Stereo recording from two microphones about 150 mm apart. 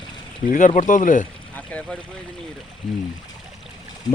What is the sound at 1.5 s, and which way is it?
Speech, 10° left (ahead or behind).